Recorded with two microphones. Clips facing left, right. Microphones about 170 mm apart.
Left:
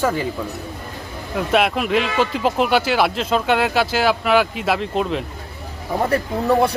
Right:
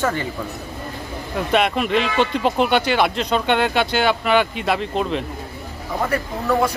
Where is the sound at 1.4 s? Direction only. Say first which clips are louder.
Left 1 dB; centre (ahead or behind).